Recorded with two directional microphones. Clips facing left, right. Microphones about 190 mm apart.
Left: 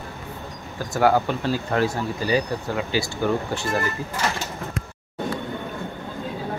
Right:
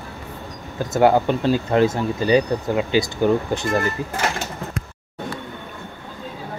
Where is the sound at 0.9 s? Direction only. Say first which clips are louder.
Right 4 dB; 20° right (ahead or behind).